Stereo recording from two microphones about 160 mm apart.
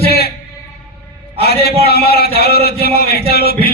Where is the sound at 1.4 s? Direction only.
80° left.